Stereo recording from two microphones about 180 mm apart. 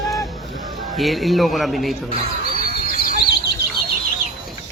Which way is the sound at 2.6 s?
55° left (ahead or behind).